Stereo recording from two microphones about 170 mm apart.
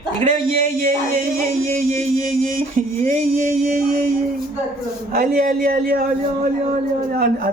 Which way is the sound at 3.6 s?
60° right (ahead or behind).